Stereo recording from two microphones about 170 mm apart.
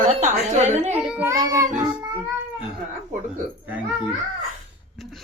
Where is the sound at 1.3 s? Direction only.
20° right (ahead or behind).